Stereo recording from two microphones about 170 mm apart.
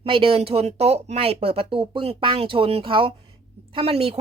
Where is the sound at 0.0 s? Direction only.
30° right (ahead or behind).